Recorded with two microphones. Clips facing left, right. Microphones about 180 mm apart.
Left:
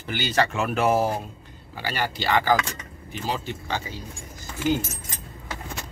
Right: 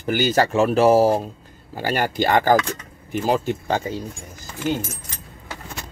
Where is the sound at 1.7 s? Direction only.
45° right (ahead or behind).